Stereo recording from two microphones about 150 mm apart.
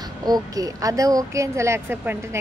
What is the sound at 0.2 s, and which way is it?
A woman's voice, 25° right (ahead or behind).